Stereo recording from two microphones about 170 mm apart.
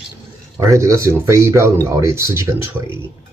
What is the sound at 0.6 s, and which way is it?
Speech, 15° right (ahead or behind).